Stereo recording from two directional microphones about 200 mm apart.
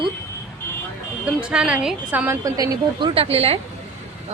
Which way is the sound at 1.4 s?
5° right (ahead or behind).